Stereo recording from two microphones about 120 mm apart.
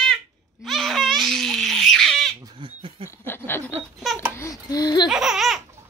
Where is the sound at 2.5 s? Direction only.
45° right (ahead or behind).